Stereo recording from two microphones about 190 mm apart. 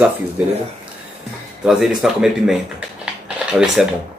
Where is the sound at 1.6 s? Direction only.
5° right (ahead or behind).